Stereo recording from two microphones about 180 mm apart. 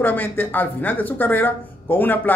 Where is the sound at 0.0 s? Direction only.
10° left (ahead or behind).